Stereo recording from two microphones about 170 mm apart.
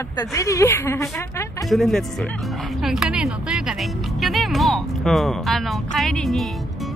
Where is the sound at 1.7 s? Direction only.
Centre (ahead or behind).